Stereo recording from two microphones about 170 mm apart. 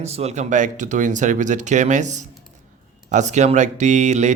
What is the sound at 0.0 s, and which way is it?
Speech, 40° right (ahead or behind).